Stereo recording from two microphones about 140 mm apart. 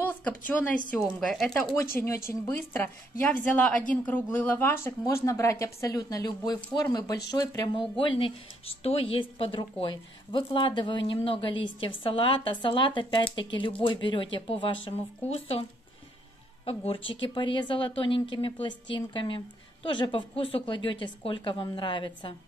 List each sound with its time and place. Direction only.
0.0 s a sound: 10° left (ahead or behind)
0.5 s a woman's voice: 10° left (ahead or behind)
1.0 s speech: centre (ahead or behind)
2.2 s a woman's voice: 15° left (ahead or behind); by 15.6 s 45° left (ahead or behind)
16.6 s speech: 40° left (ahead or behind)